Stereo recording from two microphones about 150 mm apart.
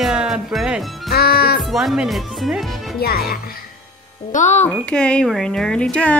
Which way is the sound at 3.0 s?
90° left.